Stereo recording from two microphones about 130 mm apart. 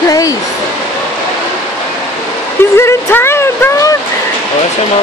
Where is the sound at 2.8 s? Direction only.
20° left (ahead or behind).